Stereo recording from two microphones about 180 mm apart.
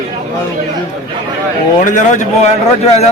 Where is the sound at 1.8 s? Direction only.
45° left (ahead or behind).